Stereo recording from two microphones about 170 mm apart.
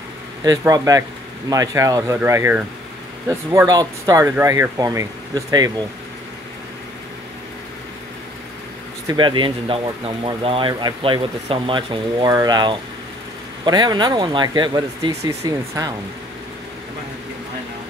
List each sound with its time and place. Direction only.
0.5 s speech: 20° right (ahead or behind)
9.0 s speech: 25° right (ahead or behind)